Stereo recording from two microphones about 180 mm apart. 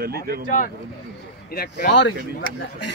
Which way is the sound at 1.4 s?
60° left (ahead or behind).